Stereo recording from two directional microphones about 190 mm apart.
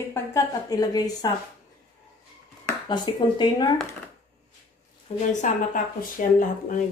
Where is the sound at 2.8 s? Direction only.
25° left (ahead or behind).